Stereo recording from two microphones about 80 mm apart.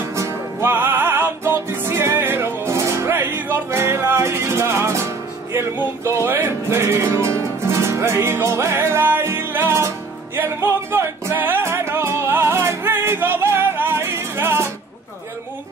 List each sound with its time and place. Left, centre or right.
0.1 s music: right